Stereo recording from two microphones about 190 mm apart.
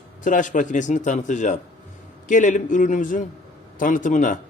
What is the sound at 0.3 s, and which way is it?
A man's voice, 45° left (ahead or behind).